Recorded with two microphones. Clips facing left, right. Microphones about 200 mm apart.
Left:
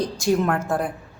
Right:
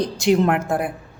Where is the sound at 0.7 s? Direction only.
10° right (ahead or behind).